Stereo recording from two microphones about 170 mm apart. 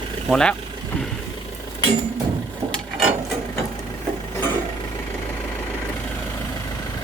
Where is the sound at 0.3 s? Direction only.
5° left (ahead or behind).